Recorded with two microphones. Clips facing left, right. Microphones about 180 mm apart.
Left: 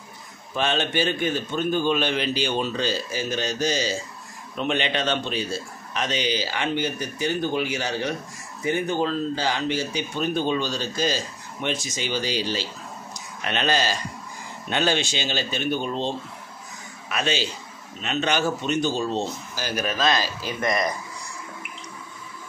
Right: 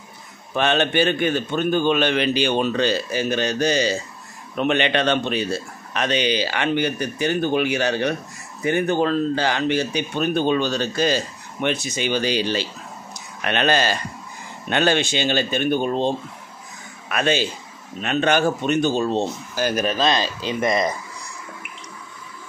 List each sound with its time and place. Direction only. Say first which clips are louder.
0.6 s speech: right 5 dB; 65° right (ahead or behind)
19.8 s speech: even; 25° right (ahead or behind)